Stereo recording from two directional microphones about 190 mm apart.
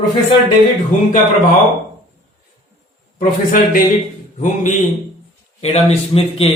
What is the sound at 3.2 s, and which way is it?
A man's voice, 45° left (ahead or behind).